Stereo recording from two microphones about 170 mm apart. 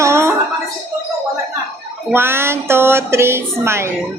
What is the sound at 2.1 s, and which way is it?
Speech, 15° right (ahead or behind).